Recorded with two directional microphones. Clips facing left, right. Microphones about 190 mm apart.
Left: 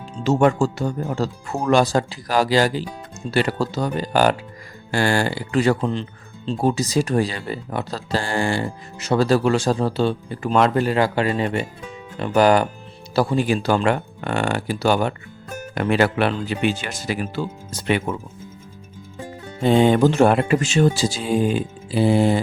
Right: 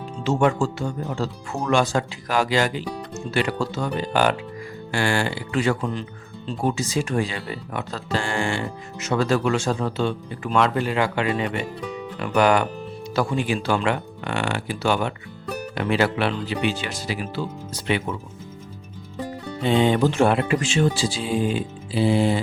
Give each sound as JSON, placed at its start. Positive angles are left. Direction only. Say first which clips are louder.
{"t": 0.3, "sound": "speech", "louder": "left 3 dB", "side_deg": 40}
{"t": 5.9, "sound": "speech", "louder": "left 3 dB", "side_deg": 25}
{"t": 19.6, "sound": "speech", "louder": "left 4 dB", "side_deg": 45}